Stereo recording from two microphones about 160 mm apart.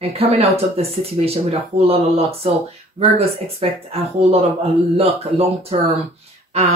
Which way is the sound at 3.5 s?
40° right (ahead or behind).